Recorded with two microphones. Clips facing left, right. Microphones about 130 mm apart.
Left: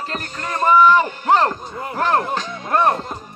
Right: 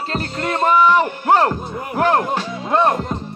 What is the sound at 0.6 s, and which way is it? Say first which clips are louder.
Speech: left 1 dB; 15° right (ahead or behind).